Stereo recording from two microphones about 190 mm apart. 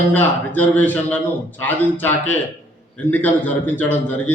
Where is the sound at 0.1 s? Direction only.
10° left (ahead or behind).